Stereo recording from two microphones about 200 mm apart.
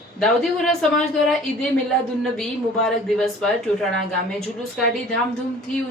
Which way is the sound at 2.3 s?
5° left (ahead or behind).